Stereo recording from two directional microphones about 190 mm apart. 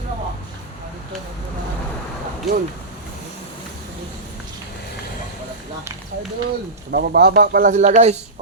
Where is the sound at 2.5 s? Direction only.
Centre (ahead or behind).